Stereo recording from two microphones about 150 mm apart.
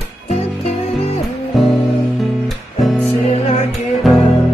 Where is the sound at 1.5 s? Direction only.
Centre (ahead or behind).